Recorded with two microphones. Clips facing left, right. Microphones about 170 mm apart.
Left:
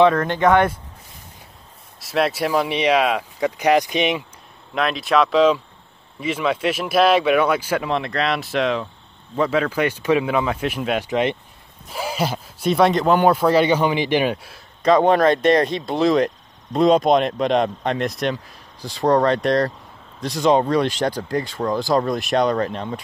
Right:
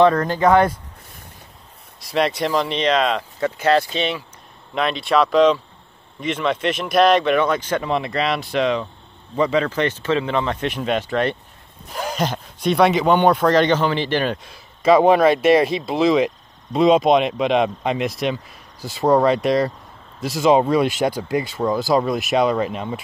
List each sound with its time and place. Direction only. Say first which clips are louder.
0.2 s speech: right 1 dB; 5° right (ahead or behind)
2.0 s speech: even; centre (ahead or behind)
4.7 s speech: even; centre (ahead or behind)
11.1 s speech: left 1 dB; 15° left (ahead or behind)
14.8 s speech: right 2 dB; 5° right (ahead or behind)